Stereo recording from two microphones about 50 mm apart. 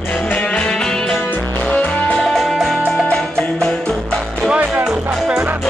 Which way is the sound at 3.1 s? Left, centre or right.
Centre.